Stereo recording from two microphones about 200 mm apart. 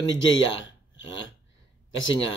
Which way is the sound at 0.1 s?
70° left (ahead or behind).